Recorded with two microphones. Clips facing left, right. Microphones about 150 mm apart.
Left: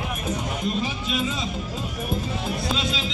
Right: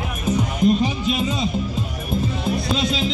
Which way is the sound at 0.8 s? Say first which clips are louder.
Right 5 dB; 40° right (ahead or behind).